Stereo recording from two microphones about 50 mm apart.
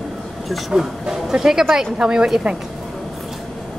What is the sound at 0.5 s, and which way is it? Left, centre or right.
Speech, centre.